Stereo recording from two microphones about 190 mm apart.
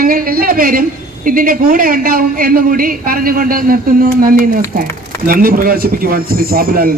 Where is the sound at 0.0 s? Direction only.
50° right (ahead or behind).